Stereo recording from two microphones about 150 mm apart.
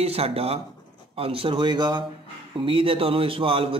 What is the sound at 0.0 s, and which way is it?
A man's voice, 40° right (ahead or behind).